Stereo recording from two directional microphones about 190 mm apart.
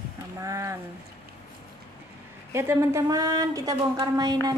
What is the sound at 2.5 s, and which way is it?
A woman's voice, 15° right (ahead or behind).